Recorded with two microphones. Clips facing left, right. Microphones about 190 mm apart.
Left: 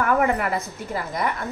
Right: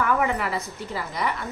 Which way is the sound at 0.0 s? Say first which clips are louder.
Left 3 dB; 50° left (ahead or behind).